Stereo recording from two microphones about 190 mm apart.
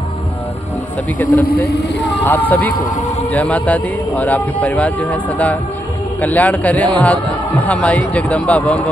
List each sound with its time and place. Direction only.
1.7 s speech: 65° left (ahead or behind)
2.2 s a man's voice: 10° left (ahead or behind)